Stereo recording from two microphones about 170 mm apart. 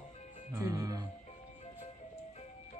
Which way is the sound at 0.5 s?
20° right (ahead or behind).